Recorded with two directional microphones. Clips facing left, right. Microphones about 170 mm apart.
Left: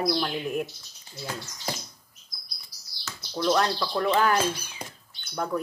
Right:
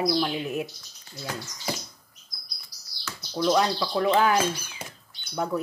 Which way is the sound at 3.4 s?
Centre (ahead or behind).